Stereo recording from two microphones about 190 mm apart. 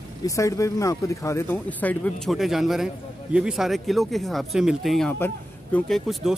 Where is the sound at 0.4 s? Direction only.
15° left (ahead or behind).